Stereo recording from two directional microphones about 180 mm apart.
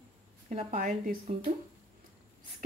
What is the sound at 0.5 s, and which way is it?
Speech, 45° right (ahead or behind).